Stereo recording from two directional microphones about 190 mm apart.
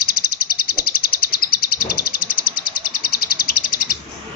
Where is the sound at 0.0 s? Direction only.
50° left (ahead or behind).